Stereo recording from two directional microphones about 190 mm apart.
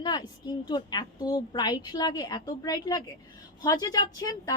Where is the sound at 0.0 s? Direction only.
20° left (ahead or behind).